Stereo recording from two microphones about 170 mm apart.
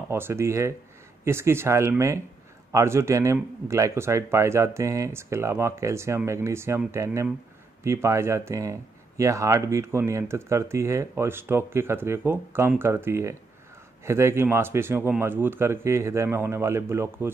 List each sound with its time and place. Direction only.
0.1 s speech: 15° right (ahead or behind)